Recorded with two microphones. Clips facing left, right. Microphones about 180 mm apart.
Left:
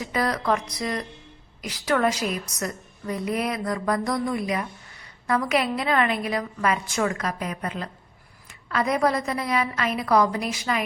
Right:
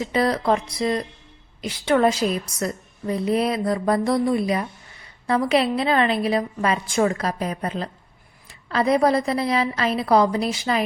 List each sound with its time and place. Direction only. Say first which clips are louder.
0.0 s a woman's voice: right 4 dB; 25° right (ahead or behind)